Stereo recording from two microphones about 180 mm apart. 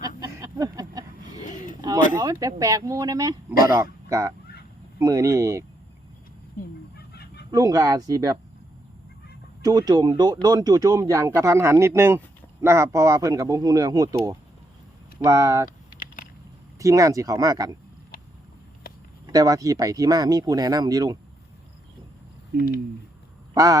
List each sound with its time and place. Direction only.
0.2 s a sound: 20° right (ahead or behind)
2.1 s speech: 15° right (ahead or behind)
6.9 s chicken: 60° left (ahead or behind)
7.5 s speech: 20° right (ahead or behind)
9.6 s speech: 20° right (ahead or behind)
16.0 s a sound: 50° left (ahead or behind)
16.7 s speech: 15° right (ahead or behind)
19.3 s speech: 20° right (ahead or behind)